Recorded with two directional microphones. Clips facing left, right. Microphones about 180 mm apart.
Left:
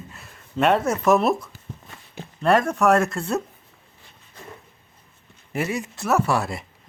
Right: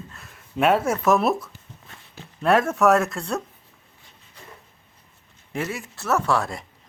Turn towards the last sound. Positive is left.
turn(degrees=5)  # may be behind; listen again after turning